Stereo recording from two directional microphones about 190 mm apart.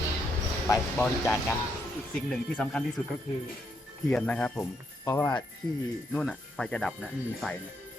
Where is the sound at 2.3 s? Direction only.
5° left (ahead or behind).